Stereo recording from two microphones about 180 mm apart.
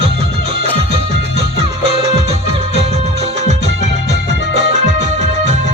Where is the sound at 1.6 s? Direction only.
35° right (ahead or behind).